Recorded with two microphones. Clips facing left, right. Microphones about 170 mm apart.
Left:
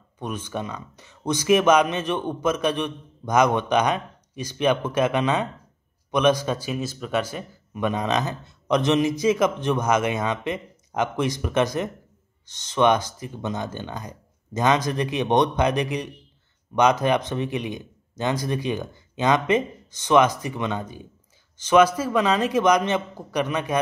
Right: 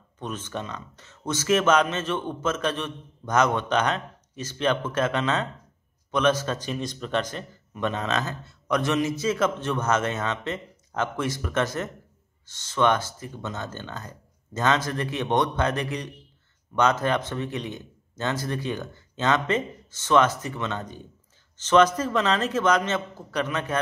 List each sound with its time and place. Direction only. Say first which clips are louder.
0.2 s a man's voice: left 3 dB; 10° left (ahead or behind)